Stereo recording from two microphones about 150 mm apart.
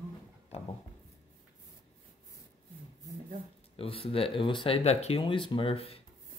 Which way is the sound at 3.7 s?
40° left (ahead or behind).